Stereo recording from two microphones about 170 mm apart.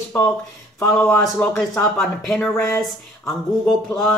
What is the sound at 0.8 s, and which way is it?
Speech, 5° left (ahead or behind).